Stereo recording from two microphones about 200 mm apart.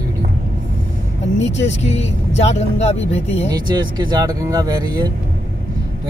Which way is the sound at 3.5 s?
20° right (ahead or behind).